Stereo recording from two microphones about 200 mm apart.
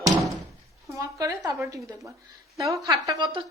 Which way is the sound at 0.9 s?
15° right (ahead or behind).